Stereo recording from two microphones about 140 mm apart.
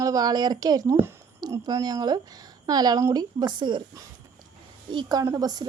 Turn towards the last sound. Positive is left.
turn(degrees=-30)  # may be behind; listen again after turning